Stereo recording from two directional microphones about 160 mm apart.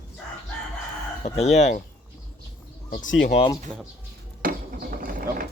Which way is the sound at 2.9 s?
55° left (ahead or behind).